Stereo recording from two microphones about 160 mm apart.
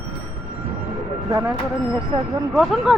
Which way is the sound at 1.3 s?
20° right (ahead or behind).